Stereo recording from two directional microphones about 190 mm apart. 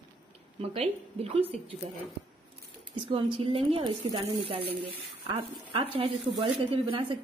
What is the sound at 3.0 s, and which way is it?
Speech, 30° right (ahead or behind).